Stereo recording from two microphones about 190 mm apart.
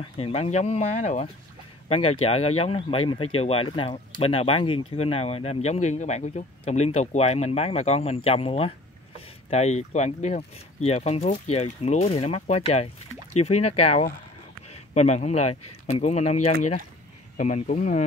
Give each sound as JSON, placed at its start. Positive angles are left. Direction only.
{"t": 0.2, "sound": "speech", "side_deg": 35}